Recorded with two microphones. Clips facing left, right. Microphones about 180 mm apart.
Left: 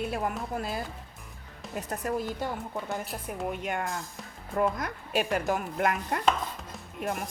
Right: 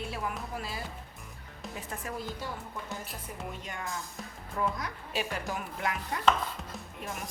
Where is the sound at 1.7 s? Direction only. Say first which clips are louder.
Left 8 dB; 40° left (ahead or behind).